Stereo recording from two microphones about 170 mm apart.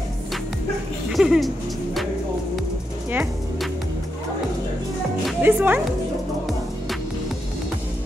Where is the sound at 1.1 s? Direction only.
Centre (ahead or behind).